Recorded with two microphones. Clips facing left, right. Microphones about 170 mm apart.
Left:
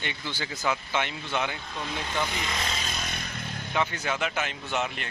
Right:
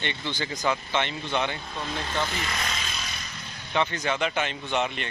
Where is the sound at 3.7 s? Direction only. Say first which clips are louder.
Right 3 dB; 5° left (ahead or behind).